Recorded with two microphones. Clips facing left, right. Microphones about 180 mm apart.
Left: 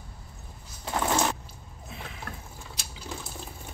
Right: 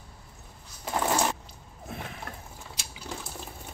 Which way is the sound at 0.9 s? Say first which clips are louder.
Even; 5° right (ahead or behind).